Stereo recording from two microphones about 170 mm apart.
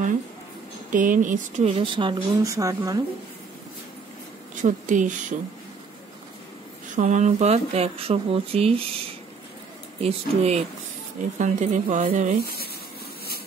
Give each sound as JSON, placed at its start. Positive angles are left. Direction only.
{"t": 0.8, "sound": "speech", "side_deg": -50}
{"t": 1.7, "sound": "speech", "side_deg": -30}
{"t": 4.6, "sound": "speech", "side_deg": -50}
{"t": 7.0, "sound": "speech", "side_deg": -45}
{"t": 10.0, "sound": "speech", "side_deg": -40}